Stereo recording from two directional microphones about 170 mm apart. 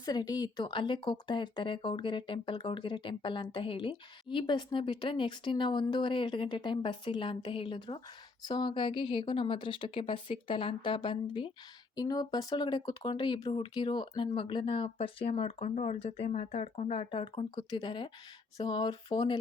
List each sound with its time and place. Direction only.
0.0 s a woman's voice: 25° left (ahead or behind)